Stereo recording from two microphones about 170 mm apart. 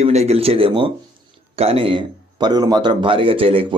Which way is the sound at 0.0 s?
40° right (ahead or behind).